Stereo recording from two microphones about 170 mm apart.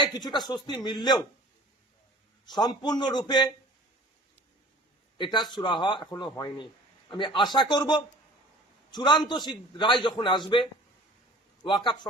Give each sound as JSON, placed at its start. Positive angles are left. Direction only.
{"t": 0.0, "sound": "a man's voice", "side_deg": 25}
{"t": 2.6, "sound": "a man's voice", "side_deg": 25}
{"t": 5.1, "sound": "a man's voice", "side_deg": 30}